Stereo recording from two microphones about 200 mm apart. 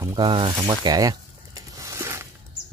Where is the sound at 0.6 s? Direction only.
20° right (ahead or behind).